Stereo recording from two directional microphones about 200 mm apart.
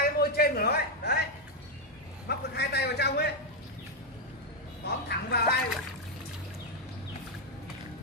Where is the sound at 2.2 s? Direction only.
55° left (ahead or behind).